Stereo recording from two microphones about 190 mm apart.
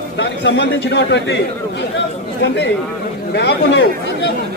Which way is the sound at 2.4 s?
65° left (ahead or behind).